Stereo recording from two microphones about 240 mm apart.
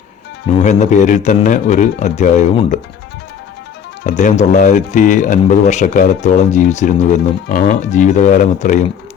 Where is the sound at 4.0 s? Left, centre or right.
Left.